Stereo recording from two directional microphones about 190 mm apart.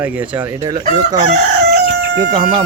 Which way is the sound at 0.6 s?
20° right (ahead or behind).